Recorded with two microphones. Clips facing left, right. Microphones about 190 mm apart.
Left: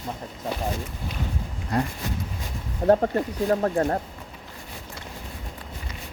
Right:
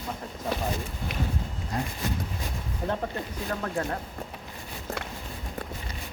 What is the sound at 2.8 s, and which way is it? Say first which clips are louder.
Speech: left 11 dB; 45° left (ahead or behind).